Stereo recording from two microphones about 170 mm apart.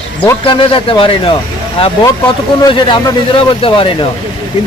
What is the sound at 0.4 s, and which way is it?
Speech, 30° left (ahead or behind).